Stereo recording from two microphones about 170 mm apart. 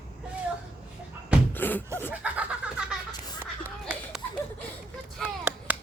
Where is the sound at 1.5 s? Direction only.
10° left (ahead or behind).